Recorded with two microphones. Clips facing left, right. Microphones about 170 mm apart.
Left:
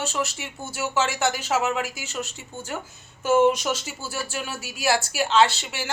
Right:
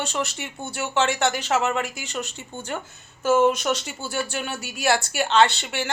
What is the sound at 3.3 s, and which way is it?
A woman's voice, 15° left (ahead or behind).